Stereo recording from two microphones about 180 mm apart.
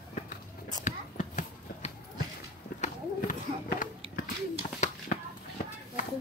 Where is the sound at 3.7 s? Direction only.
45° left (ahead or behind).